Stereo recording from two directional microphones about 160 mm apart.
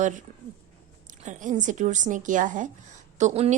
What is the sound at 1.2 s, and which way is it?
A woman's voice, 50° right (ahead or behind).